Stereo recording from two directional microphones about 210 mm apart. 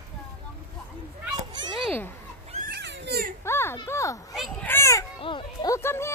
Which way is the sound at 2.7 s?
55° right (ahead or behind).